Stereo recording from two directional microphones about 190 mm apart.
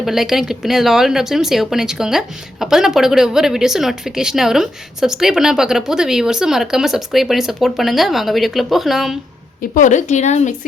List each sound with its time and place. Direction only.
0.0 s speech: centre (ahead or behind)
9.6 s a woman's voice: 45° left (ahead or behind)